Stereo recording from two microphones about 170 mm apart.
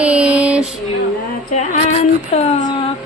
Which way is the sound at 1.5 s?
45° left (ahead or behind).